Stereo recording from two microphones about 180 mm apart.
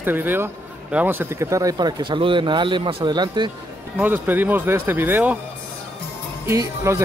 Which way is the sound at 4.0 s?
10° right (ahead or behind).